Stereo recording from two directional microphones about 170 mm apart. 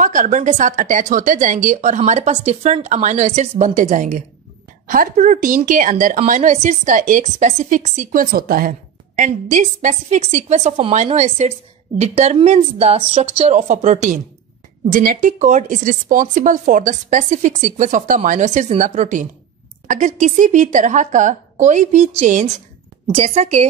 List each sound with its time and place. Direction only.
0.0 s a woman's voice: 50° right (ahead or behind)